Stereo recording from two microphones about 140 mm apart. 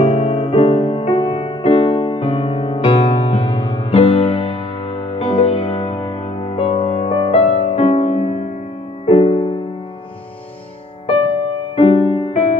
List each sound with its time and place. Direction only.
0.0 s music: 45° left (ahead or behind)
11.7 s music: 45° left (ahead or behind)